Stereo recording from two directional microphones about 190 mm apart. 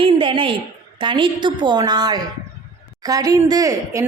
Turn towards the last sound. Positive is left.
turn(degrees=-15)  # may be behind; listen again after turning